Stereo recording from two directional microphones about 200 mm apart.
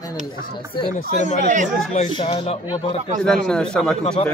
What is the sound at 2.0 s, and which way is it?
Speech, 30° left (ahead or behind).